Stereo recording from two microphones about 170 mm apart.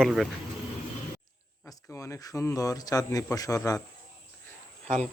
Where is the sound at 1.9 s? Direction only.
15° left (ahead or behind).